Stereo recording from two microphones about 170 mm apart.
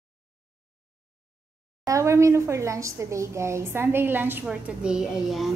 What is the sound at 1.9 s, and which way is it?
A woman's voice, 15° right (ahead or behind).